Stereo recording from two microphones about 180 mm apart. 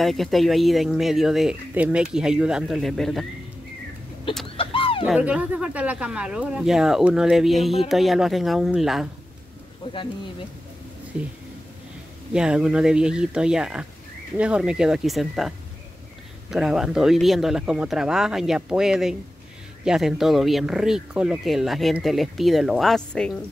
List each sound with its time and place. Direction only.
0.0 s speech: centre (ahead or behind)
4.6 s a sound: 30° left (ahead or behind)
5.0 s speech: 5° right (ahead or behind)
11.1 s speech: 10° right (ahead or behind)
12.4 s speech: 5° right (ahead or behind)